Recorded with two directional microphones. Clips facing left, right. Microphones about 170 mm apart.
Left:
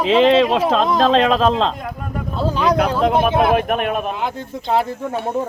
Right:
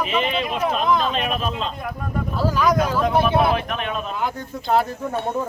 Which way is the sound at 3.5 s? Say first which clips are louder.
Left 6 dB; 50° left (ahead or behind).